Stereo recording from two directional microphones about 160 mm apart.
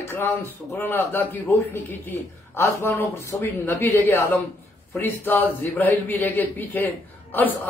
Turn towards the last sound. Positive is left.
turn(degrees=10)  # may be behind; listen again after turning